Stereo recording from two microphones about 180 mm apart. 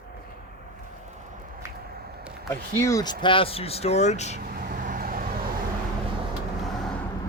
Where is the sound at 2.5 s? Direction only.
15° left (ahead or behind).